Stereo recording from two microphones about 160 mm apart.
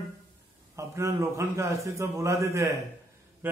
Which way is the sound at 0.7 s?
20° right (ahead or behind).